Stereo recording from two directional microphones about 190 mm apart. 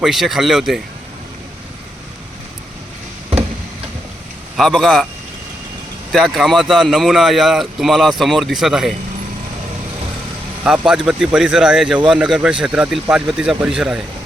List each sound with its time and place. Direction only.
0.0 s speech: centre (ahead or behind)
4.5 s speech: centre (ahead or behind)
6.1 s speech: centre (ahead or behind)
10.6 s speech: 5° right (ahead or behind)